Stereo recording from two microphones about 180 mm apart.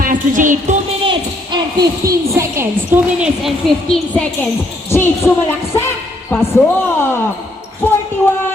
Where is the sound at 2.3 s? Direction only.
15° right (ahead or behind).